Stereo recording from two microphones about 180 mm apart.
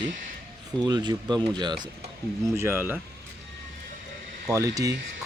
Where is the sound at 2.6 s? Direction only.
15° right (ahead or behind).